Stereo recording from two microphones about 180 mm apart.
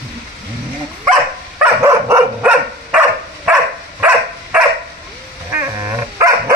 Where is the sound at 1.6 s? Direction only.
15° right (ahead or behind).